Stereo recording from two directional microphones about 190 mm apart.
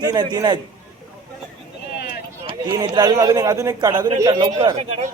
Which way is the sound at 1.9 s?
60° left (ahead or behind).